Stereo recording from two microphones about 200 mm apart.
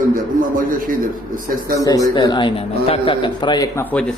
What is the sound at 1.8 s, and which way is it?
A man's voice, 15° left (ahead or behind).